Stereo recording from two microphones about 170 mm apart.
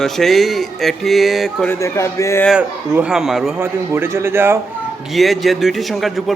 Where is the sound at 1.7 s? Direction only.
15° left (ahead or behind).